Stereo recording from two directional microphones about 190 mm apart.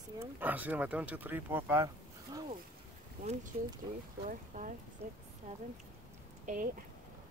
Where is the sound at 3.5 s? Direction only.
35° right (ahead or behind).